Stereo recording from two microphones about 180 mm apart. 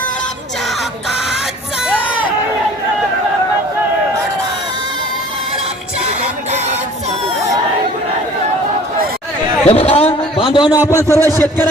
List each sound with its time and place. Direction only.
6.1 s music: 40° right (ahead or behind)
9.6 s a sound: 35° left (ahead or behind)
10.8 s speech: 15° left (ahead or behind)